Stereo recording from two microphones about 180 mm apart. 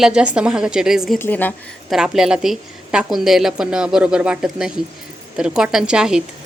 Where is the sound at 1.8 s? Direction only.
Centre (ahead or behind).